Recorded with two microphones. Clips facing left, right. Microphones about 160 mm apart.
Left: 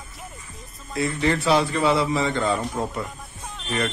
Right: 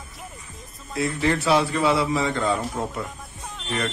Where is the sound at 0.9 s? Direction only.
Centre (ahead or behind).